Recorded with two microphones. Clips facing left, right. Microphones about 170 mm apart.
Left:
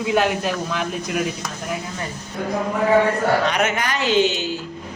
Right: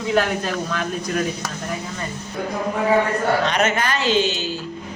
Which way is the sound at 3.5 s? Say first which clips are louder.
Right 1 dB; 10° left (ahead or behind).